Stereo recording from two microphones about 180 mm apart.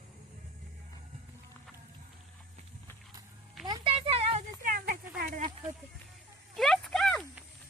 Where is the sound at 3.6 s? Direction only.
25° right (ahead or behind).